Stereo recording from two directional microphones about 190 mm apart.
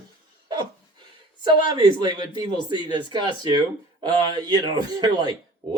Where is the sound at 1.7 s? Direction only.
20° right (ahead or behind).